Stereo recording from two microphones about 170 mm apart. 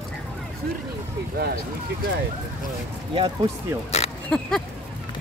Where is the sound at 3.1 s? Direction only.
25° right (ahead or behind).